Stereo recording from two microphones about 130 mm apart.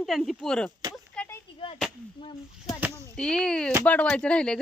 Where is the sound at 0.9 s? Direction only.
10° left (ahead or behind).